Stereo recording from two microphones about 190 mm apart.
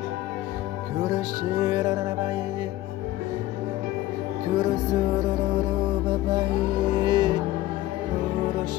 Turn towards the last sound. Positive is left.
turn(degrees=-25)  # may be behind; listen again after turning